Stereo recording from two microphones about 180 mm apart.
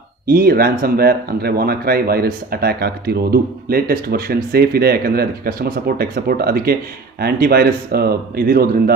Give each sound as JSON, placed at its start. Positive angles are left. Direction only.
{"t": 0.3, "sound": "speech", "side_deg": -55}